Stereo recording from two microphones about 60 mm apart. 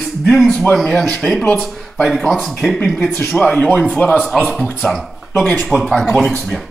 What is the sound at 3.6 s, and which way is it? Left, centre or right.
Speech, left.